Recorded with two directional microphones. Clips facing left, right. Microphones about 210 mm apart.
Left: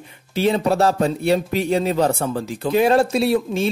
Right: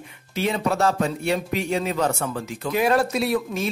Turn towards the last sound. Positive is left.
turn(degrees=30)  # may be behind; listen again after turning